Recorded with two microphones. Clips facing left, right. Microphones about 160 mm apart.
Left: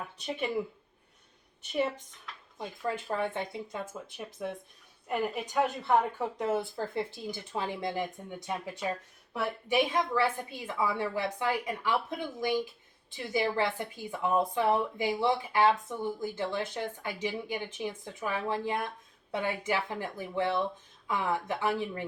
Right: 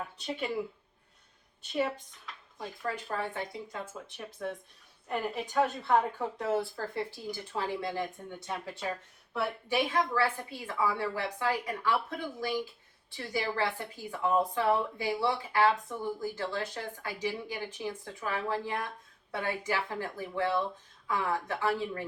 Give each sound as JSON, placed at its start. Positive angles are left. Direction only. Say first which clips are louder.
{"t": 2.6, "sound": "a woman's voice", "louder": "left 2 dB", "side_deg": 20}
{"t": 5.0, "sound": "a woman's voice", "louder": "left 2 dB", "side_deg": 15}